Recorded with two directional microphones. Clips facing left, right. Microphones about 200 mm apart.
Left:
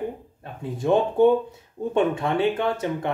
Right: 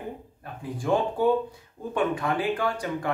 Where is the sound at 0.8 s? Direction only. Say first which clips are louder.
Left 5 dB; 25° left (ahead or behind).